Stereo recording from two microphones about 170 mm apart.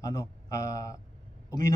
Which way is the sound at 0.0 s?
20° left (ahead or behind).